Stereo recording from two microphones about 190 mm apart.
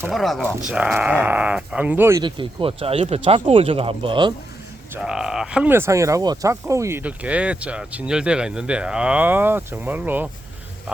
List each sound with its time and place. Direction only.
0.1 s speech: centre (ahead or behind)
2.2 s speech: 25° right (ahead or behind)
4.9 s speech: 5° right (ahead or behind)